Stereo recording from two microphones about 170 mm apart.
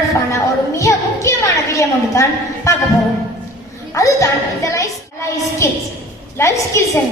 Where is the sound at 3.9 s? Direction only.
20° left (ahead or behind).